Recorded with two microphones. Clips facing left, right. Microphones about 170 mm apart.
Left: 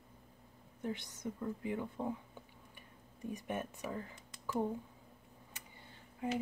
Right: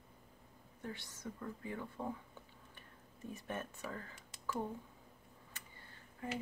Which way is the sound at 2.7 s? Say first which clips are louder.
Left 1 dB; 15° left (ahead or behind).